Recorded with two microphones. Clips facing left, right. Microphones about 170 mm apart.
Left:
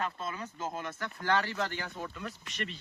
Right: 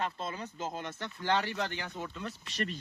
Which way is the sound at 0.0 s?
25° right (ahead or behind).